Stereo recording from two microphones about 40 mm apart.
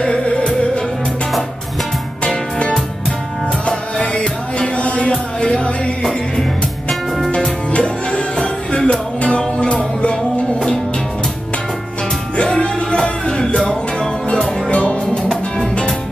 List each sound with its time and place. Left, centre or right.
0.0 s music: left
3.6 s music: left
7.2 s music: left
12.4 s music: centre
14.7 s music: left